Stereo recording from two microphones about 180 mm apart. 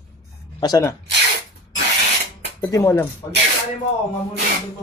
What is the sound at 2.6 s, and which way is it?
Speech, 15° left (ahead or behind).